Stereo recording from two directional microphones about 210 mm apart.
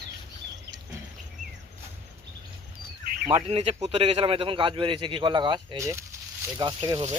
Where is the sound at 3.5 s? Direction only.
25° right (ahead or behind).